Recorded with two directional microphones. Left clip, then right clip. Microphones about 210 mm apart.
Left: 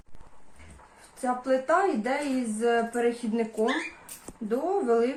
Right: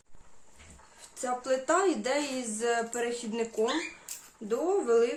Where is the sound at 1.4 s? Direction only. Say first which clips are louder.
Left 3 dB; 35° right (ahead or behind).